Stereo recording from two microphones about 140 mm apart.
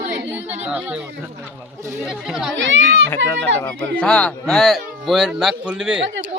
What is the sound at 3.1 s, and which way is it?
Speech, 15° left (ahead or behind).